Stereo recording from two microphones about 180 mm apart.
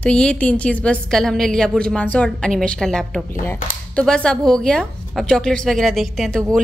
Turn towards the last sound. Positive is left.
turn(degrees=5)  # may be behind; listen again after turning